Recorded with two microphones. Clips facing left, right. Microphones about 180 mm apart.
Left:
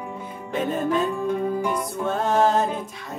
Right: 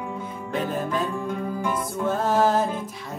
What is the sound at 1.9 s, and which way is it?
Music, centre (ahead or behind).